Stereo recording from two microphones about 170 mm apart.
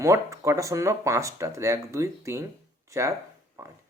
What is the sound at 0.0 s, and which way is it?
Speech, 15° right (ahead or behind).